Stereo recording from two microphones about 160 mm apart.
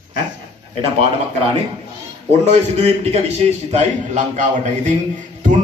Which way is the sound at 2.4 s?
40° right (ahead or behind).